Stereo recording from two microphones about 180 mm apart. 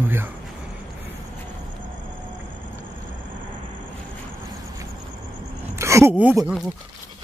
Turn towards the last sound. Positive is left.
turn(degrees=-5)  # may be behind; listen again after turning